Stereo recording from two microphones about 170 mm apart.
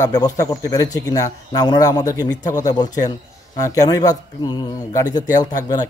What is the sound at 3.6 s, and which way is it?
Speech, 20° left (ahead or behind).